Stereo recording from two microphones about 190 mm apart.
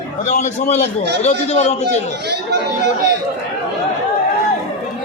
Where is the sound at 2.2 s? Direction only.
60° right (ahead or behind).